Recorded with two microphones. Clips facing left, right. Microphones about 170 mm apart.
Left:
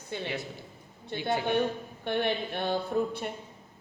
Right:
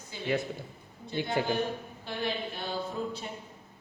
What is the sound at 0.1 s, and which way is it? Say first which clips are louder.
Speech: left 6 dB; 60° left (ahead or behind).